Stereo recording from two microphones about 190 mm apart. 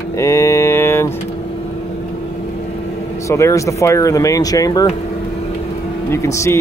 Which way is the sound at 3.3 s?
15° left (ahead or behind).